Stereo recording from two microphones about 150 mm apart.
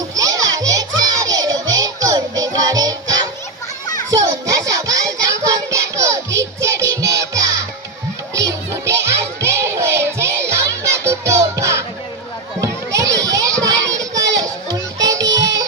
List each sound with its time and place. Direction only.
0.2 s music: 25° right (ahead or behind)
4.1 s child singing: 25° right (ahead or behind)
8.4 s music: 20° right (ahead or behind)
12.6 s children playing: 20° right (ahead or behind)